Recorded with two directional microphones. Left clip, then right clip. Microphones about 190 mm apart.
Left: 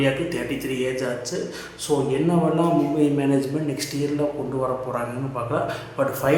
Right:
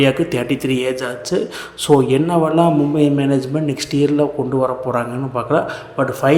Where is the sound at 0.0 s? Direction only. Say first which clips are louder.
Right 7 dB; 40° right (ahead or behind).